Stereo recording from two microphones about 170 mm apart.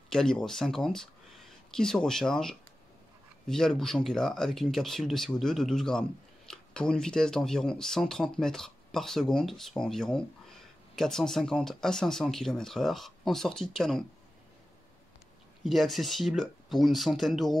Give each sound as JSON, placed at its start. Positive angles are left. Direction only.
{"t": 0.1, "sound": "speech", "side_deg": 5}
{"t": 15.6, "sound": "speech", "side_deg": 0}